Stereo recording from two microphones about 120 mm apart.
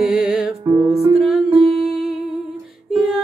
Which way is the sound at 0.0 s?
5° right (ahead or behind).